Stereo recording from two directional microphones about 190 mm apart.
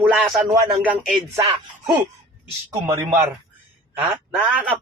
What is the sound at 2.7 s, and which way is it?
Speech, 15° right (ahead or behind).